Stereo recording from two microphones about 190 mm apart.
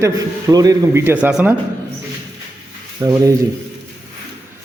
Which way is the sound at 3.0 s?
20° right (ahead or behind).